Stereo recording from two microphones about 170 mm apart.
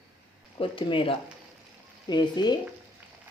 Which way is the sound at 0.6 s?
30° left (ahead or behind).